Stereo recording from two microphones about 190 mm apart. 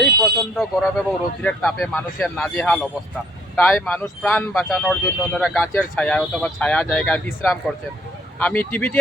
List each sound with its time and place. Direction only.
0.5 s speech: 5° left (ahead or behind)